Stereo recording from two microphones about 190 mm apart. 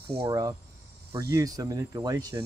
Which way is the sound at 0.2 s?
20° right (ahead or behind).